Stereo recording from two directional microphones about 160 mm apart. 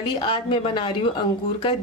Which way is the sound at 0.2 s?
30° left (ahead or behind).